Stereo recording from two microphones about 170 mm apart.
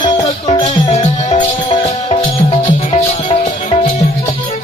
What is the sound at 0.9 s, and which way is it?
Music, 45° left (ahead or behind).